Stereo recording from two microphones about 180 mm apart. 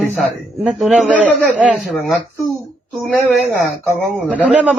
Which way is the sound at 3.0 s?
5° left (ahead or behind).